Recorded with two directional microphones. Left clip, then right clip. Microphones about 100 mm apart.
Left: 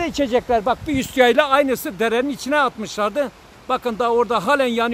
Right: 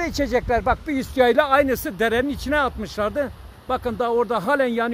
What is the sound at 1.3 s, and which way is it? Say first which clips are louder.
Speech: left 1 dB; 5° right (ahead or behind).